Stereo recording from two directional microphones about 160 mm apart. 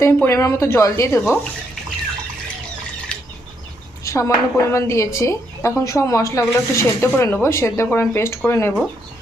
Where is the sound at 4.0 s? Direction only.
20° left (ahead or behind).